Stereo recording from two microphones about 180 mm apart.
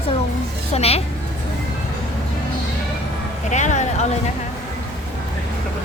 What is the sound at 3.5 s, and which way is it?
Speech, 40° left (ahead or behind).